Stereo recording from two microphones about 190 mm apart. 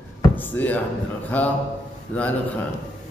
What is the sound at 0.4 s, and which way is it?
Music, 10° left (ahead or behind).